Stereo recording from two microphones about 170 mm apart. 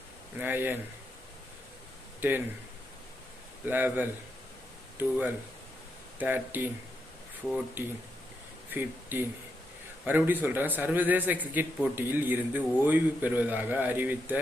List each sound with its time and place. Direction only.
0.3 s a man's voice: 10° right (ahead or behind)
2.2 s a man's voice: 10° right (ahead or behind)
3.7 s a man's voice: 10° right (ahead or behind)